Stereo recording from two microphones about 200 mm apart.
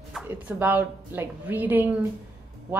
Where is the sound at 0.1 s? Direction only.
10° right (ahead or behind).